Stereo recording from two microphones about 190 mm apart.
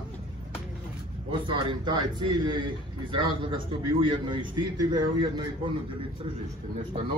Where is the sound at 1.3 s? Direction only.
25° right (ahead or behind).